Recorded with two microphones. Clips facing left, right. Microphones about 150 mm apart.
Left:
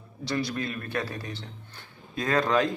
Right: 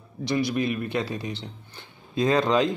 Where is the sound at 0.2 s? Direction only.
15° right (ahead or behind).